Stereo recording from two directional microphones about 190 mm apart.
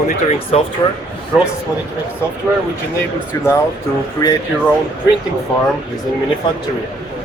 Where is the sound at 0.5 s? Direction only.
35° left (ahead or behind).